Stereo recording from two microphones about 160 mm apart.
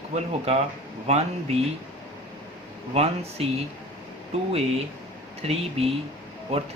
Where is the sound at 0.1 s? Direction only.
40° right (ahead or behind).